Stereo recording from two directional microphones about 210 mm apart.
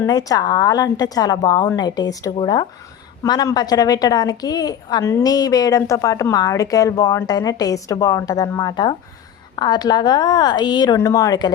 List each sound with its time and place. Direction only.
0.0 s a woman's voice: 15° left (ahead or behind)